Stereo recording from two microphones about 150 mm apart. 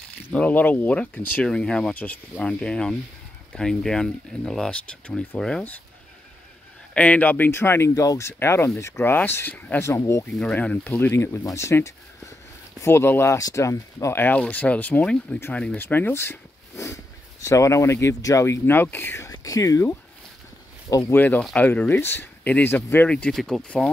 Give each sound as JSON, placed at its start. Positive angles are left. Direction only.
{"t": 0.3, "sound": "speech", "side_deg": 10}
{"t": 6.9, "sound": "speech", "side_deg": 10}
{"t": 10.3, "sound": "speech", "side_deg": 10}